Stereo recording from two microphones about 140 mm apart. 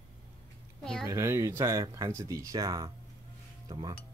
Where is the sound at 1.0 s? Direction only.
20° right (ahead or behind).